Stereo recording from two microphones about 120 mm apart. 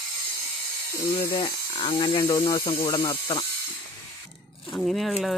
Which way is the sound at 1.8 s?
50° left (ahead or behind).